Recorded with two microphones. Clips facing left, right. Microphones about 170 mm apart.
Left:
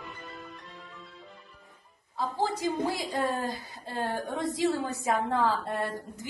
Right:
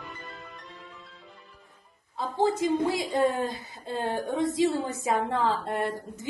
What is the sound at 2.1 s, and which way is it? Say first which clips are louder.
A woman's voice: right 4 dB; 20° right (ahead or behind).